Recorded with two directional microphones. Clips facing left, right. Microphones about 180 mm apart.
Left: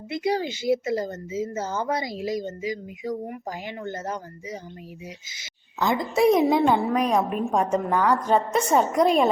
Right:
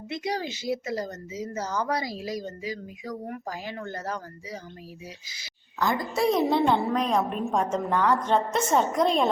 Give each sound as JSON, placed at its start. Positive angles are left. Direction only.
{"t": 0.1, "sound": "a woman's voice", "side_deg": 30}